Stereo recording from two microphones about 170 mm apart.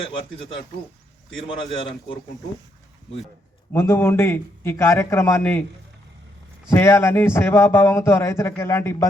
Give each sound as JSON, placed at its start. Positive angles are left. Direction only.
{"t": 1.5, "sound": "a man's voice", "side_deg": 30}
{"t": 3.7, "sound": "a man's voice", "side_deg": 15}
{"t": 6.7, "sound": "a man's voice", "side_deg": 15}